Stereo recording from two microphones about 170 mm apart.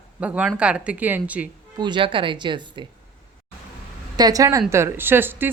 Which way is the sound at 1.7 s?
25° right (ahead or behind).